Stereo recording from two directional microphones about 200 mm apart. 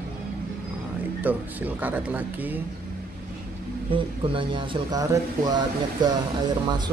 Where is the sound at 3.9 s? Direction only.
25° right (ahead or behind).